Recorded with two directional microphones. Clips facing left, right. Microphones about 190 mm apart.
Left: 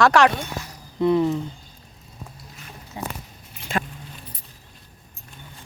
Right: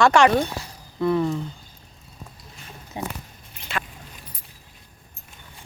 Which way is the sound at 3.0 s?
20° right (ahead or behind).